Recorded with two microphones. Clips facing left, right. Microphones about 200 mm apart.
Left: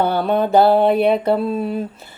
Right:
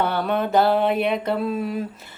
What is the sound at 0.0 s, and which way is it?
Mantra, 35° left (ahead or behind).